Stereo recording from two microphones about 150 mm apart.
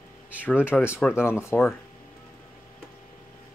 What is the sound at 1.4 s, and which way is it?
Speech, 15° left (ahead or behind).